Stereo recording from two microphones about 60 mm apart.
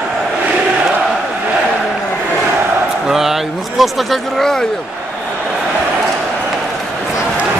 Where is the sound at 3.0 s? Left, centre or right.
Centre.